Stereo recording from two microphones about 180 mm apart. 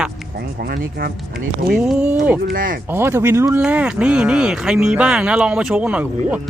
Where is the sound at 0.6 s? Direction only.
60° right (ahead or behind).